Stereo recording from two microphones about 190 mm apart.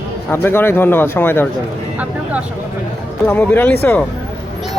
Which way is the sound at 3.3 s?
10° left (ahead or behind).